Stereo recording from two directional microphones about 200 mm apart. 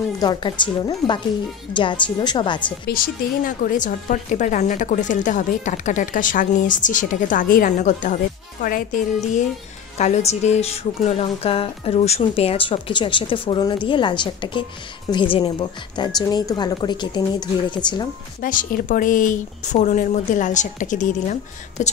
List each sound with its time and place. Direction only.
0.2 s speech: 20° left (ahead or behind)
3.4 s a woman's voice: 40° left (ahead or behind); by 17.7 s 25° left (ahead or behind)
18.4 s a woman's voice: 45° left (ahead or behind)